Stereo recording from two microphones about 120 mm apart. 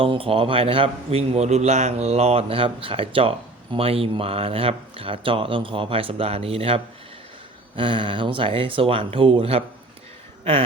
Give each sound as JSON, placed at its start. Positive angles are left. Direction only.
{"t": 0.0, "sound": "a man's voice", "side_deg": -50}